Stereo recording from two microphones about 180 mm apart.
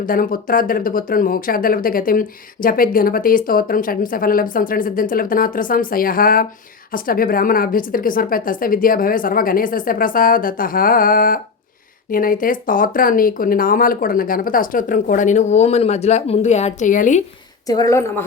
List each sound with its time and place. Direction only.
0.0 s speech: 50° left (ahead or behind)
17.7 s speech: 20° left (ahead or behind)